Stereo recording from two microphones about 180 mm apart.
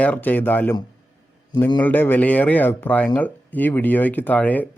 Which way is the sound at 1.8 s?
10° left (ahead or behind).